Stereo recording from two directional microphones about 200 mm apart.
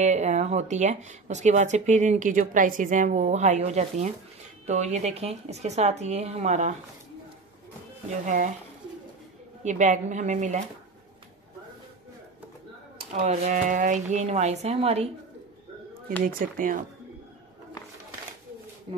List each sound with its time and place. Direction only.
0.0 s speech: 35° right (ahead or behind)
9.6 s speech: 35° right (ahead or behind)
12.9 s speech: 35° right (ahead or behind)
16.3 s a woman's voice: 45° right (ahead or behind)